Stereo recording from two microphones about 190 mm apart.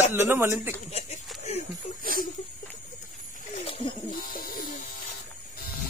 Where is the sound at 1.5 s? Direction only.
35° left (ahead or behind).